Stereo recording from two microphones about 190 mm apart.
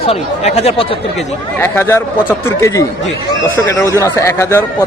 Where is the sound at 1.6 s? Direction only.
10° left (ahead or behind).